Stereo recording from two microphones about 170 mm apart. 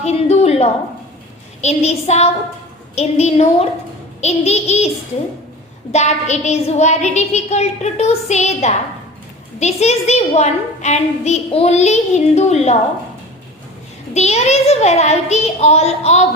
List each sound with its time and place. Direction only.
0.0 s a sound: 40° left (ahead or behind)
1.6 s a woman's voice: 40° left (ahead or behind)
5.9 s a woman's voice: 40° left (ahead or behind)
14.1 s a woman's voice: 40° left (ahead or behind)